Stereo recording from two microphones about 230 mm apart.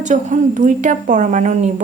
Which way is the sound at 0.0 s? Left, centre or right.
Right.